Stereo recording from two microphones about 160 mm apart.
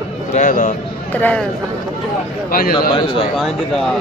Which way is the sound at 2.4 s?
65° left (ahead or behind).